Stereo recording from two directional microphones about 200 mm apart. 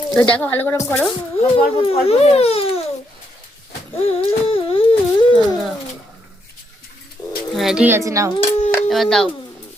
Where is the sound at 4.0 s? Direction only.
30° left (ahead or behind).